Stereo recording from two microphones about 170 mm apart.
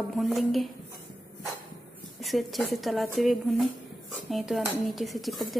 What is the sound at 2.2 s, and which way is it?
Speech, centre (ahead or behind).